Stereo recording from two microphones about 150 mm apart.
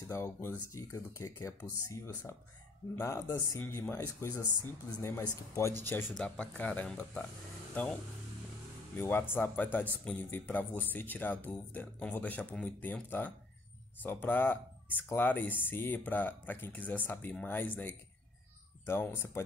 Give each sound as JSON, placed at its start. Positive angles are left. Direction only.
{"t": 0.0, "sound": "a man's voice", "side_deg": 20}
{"t": 6.1, "sound": "a man's voice", "side_deg": 10}
{"t": 8.9, "sound": "a man's voice", "side_deg": 15}